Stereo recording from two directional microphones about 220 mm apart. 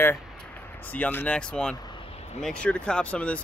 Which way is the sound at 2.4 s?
5° left (ahead or behind).